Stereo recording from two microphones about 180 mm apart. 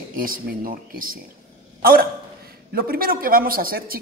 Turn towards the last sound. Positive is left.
turn(degrees=-55)  # may be behind; listen again after turning